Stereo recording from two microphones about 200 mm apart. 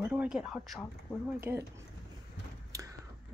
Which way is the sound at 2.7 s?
15° right (ahead or behind).